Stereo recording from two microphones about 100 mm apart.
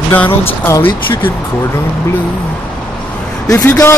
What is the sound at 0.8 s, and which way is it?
Speech, 20° left (ahead or behind).